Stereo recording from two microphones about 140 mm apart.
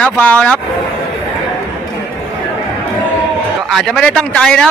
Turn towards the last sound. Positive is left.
turn(degrees=5)  # may be behind; listen again after turning